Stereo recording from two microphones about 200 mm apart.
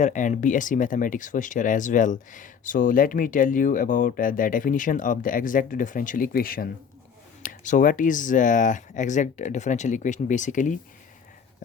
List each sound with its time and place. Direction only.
0.0 s speech: 40° left (ahead or behind)